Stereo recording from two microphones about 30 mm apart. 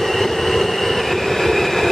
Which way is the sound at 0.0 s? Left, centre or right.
Centre.